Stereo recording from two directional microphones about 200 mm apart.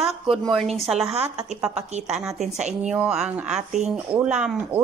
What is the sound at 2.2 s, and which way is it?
Speech, centre (ahead or behind).